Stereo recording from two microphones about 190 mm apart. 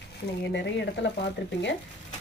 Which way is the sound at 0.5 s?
65° left (ahead or behind).